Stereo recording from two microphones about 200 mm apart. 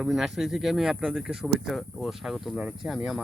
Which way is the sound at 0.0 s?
Centre (ahead or behind).